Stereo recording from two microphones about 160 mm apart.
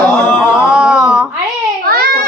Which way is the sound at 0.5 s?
5° right (ahead or behind).